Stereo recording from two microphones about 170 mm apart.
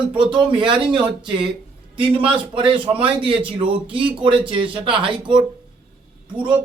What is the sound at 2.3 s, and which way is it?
Speech, 30° right (ahead or behind).